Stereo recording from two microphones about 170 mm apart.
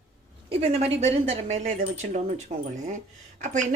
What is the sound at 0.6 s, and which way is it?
A woman's voice, 35° right (ahead or behind).